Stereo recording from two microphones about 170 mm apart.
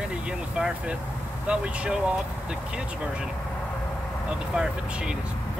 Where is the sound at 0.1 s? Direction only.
5° right (ahead or behind).